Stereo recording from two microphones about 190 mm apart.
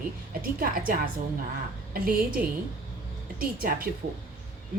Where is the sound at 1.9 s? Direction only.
50° right (ahead or behind).